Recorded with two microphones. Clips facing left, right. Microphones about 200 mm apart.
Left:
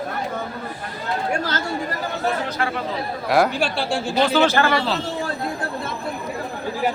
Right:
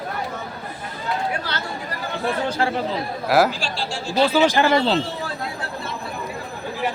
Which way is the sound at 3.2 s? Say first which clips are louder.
Right 1 dB; 5° right (ahead or behind).